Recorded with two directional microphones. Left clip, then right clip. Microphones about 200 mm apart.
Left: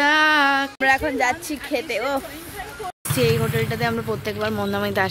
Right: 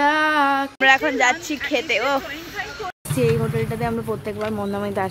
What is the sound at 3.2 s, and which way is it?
Speech, 10° right (ahead or behind).